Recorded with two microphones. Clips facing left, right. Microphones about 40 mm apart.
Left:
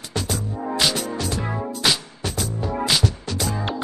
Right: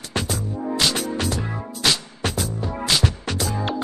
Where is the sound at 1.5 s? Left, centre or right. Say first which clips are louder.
Left 1 dB; centre.